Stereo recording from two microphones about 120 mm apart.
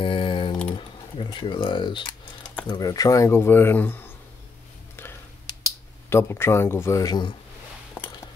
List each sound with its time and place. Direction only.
0.0 s typing: 45° left (ahead or behind)
0.7 s a sound: 45° left (ahead or behind)
2.7 s speech: 30° left (ahead or behind)
6.0 s speech: 20° left (ahead or behind)